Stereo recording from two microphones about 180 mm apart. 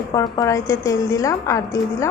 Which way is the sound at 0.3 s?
15° left (ahead or behind).